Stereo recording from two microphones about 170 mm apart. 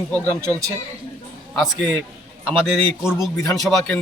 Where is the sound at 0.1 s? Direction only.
20° right (ahead or behind).